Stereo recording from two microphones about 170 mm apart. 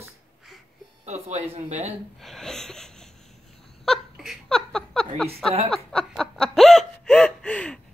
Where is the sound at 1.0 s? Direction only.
40° right (ahead or behind).